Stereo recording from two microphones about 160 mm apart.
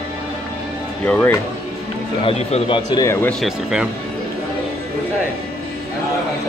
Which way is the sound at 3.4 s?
5° right (ahead or behind).